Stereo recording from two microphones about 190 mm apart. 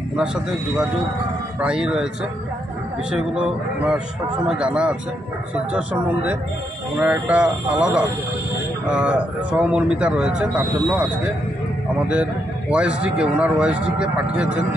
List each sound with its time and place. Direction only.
1.6 s speech: 5° right (ahead or behind)
3.1 s speech: 5° right (ahead or behind)
12.7 s speech: 5° right (ahead or behind)